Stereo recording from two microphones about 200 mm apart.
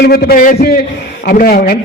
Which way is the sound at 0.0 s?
50° left (ahead or behind).